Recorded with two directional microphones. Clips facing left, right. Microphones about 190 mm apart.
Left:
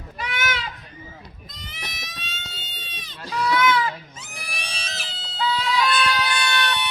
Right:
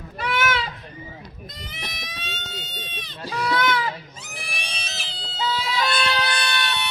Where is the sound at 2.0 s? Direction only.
60° right (ahead or behind).